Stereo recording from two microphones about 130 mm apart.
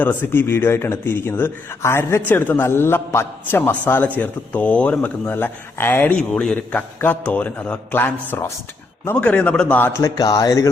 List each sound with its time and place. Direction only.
0.0 s speech: 15° left (ahead or behind)
10.0 s speech: 30° left (ahead or behind)